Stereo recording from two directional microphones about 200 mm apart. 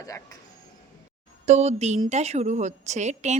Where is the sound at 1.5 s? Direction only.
35° right (ahead or behind).